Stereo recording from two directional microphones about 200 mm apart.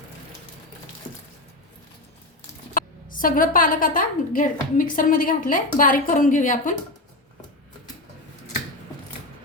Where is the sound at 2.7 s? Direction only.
45° left (ahead or behind).